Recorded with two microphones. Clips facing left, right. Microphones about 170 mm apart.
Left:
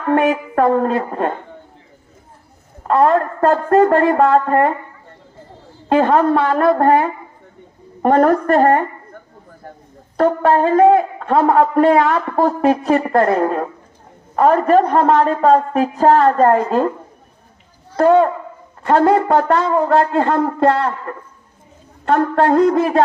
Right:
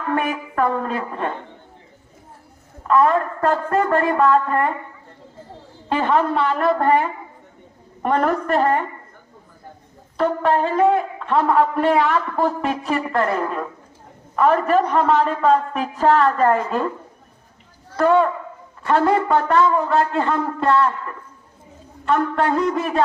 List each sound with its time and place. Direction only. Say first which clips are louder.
0.1 s speech: left 8 dB; 45° left (ahead or behind)
2.8 s a man's voice: left 3 dB; 40° left (ahead or behind)
5.9 s speech: left 6 dB; 45° left (ahead or behind)
10.2 s a man's voice: left 5 dB; 45° left (ahead or behind)
17.9 s a man's voice: left 4 dB; 40° left (ahead or behind)
20.2 s a man's voice: left 5 dB; 55° left (ahead or behind)
22.0 s a man's voice: left 4 dB; 45° left (ahead or behind)
22.4 s a man's voice: left 7 dB; 60° left (ahead or behind)